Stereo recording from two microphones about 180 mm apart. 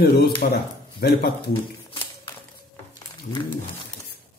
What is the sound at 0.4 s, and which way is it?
Speech, 50° left (ahead or behind).